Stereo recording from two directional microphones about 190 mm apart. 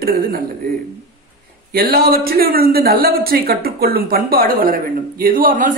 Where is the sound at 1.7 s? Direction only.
50° right (ahead or behind).